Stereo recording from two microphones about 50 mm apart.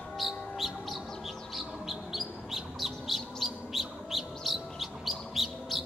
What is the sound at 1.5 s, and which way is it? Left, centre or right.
Chirp, centre.